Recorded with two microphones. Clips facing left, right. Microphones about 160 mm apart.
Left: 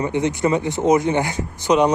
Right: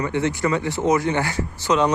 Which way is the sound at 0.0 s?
20° left (ahead or behind).